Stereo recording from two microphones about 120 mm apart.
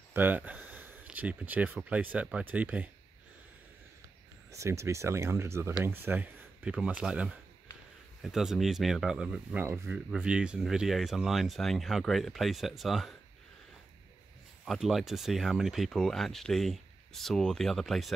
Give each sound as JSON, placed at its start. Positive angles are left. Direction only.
{"t": 0.1, "sound": "speech", "side_deg": -15}
{"t": 4.5, "sound": "speech", "side_deg": -25}
{"t": 9.6, "sound": "speech", "side_deg": -15}
{"t": 14.6, "sound": "speech", "side_deg": 0}